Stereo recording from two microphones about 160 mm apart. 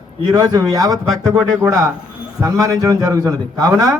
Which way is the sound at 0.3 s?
25° right (ahead or behind).